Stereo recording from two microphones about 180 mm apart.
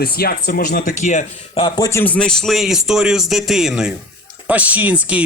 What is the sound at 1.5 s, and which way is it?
Speech, 25° left (ahead or behind).